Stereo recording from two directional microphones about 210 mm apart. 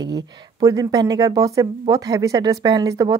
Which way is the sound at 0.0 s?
20° right (ahead or behind).